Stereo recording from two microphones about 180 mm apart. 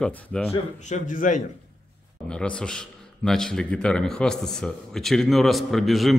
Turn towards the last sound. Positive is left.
turn(degrees=0)  # may be behind; listen again after turning